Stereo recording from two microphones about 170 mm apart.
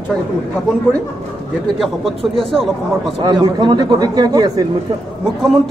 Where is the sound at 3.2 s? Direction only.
25° right (ahead or behind).